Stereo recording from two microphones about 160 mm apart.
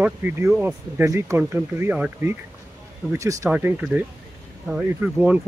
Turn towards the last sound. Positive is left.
turn(degrees=-10)  # may be behind; listen again after turning